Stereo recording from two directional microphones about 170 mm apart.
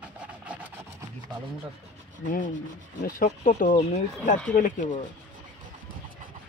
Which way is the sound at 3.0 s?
55° left (ahead or behind).